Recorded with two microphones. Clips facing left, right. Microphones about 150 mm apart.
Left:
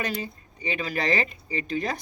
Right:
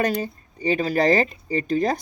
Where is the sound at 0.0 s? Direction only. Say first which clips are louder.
Right 7 dB; 40° right (ahead or behind).